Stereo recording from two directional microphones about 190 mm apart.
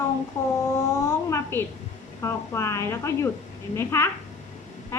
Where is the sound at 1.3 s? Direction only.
15° left (ahead or behind).